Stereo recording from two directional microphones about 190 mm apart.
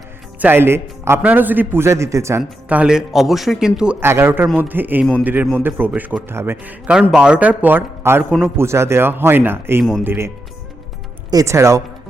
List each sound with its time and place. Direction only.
0.3 s a man's voice: 10° right (ahead or behind)